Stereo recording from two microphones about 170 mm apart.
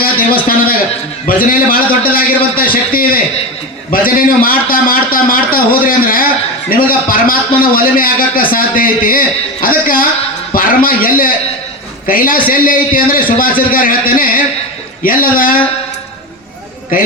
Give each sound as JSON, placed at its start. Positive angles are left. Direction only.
{"t": 0.0, "sound": "a sound", "side_deg": 55}
{"t": 1.5, "sound": "a man's voice", "side_deg": 55}
{"t": 16.9, "sound": "a man's voice", "side_deg": 55}